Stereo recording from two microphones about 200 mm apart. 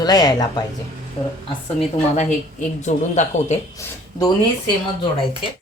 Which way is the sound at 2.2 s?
35° left (ahead or behind).